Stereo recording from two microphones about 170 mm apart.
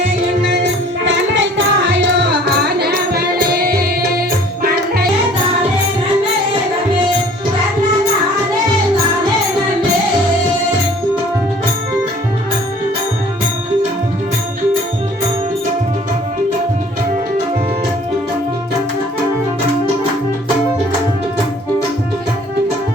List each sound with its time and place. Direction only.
1.0 s music: 90° right; by 5.0 s 60° right (ahead or behind)